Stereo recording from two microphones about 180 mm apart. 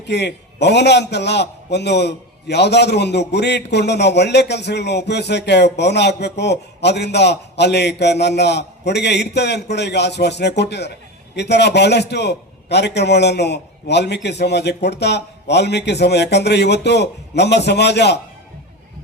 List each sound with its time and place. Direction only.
0.0 s a man's voice: 70° left (ahead or behind)